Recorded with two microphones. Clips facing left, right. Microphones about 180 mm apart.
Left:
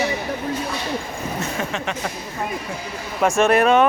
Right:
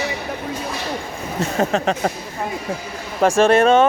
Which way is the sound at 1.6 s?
40° right (ahead or behind).